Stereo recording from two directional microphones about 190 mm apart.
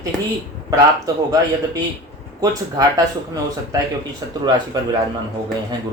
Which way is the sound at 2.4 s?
20° right (ahead or behind).